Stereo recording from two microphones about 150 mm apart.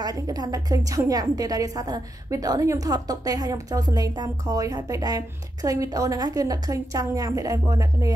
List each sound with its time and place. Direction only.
0.0 s a woman's voice: 25° right (ahead or behind)